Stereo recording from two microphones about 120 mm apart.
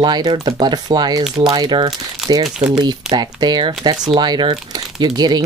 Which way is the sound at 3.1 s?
35° right (ahead or behind).